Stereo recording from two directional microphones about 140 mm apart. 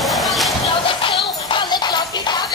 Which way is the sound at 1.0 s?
35° left (ahead or behind).